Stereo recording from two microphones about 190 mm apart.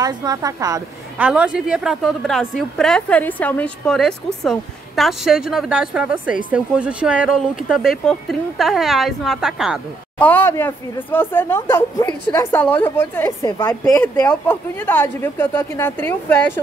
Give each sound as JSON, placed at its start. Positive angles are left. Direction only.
{"t": 0.0, "sound": "a woman's voice", "side_deg": -20}
{"t": 1.2, "sound": "a woman's voice", "side_deg": -5}
{"t": 13.9, "sound": "speech", "side_deg": 5}